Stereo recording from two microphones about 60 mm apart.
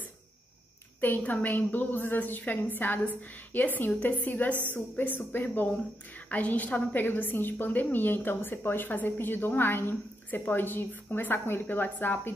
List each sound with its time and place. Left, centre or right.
1.0 s speech: left